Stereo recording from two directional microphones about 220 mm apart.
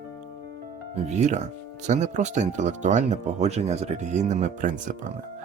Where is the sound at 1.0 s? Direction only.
30° right (ahead or behind).